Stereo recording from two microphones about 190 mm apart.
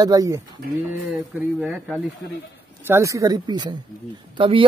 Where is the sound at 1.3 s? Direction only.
5° right (ahead or behind).